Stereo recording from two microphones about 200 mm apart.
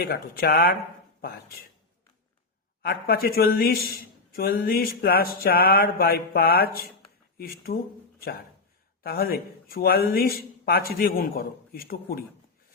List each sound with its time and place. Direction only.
0.0 s a man's voice: 50° left (ahead or behind)
2.8 s a man's voice: 50° left (ahead or behind)
9.0 s a man's voice: 50° left (ahead or behind)